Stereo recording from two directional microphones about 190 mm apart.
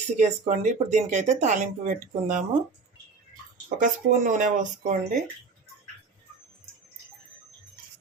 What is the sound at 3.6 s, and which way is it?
Speech, 40° right (ahead or behind).